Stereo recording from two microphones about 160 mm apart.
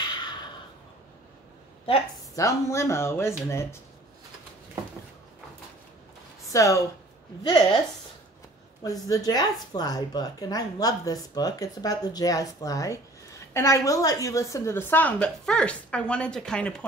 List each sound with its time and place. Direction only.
0.0 s a sound: 25° left (ahead or behind)
2.3 s a woman's voice: 20° left (ahead or behind)
6.5 s speech: 20° left (ahead or behind)
8.8 s a woman's voice: 25° left (ahead or behind); by 16.8 s 5° left (ahead or behind)